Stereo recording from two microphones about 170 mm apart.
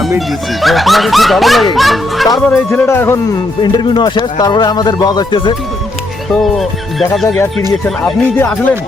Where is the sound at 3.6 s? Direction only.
25° left (ahead or behind).